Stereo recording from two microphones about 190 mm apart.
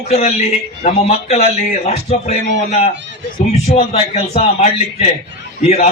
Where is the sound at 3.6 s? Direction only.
35° left (ahead or behind).